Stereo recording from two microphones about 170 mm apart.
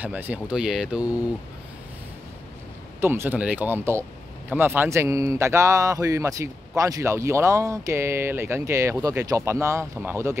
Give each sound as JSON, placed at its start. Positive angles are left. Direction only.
{"t": 0.0, "sound": "speech", "side_deg": -10}
{"t": 3.0, "sound": "speech", "side_deg": -15}